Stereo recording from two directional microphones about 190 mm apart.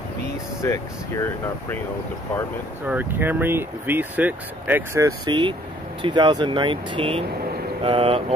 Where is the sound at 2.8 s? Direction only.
10° right (ahead or behind).